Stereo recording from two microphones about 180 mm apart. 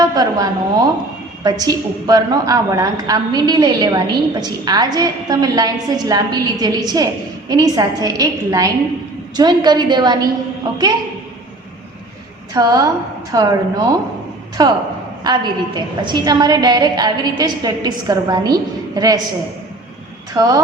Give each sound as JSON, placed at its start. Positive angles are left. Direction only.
{"t": 0.0, "sound": "a woman's voice", "side_deg": -20}
{"t": 12.5, "sound": "a woman's voice", "side_deg": -20}
{"t": 20.3, "sound": "a woman's voice", "side_deg": -20}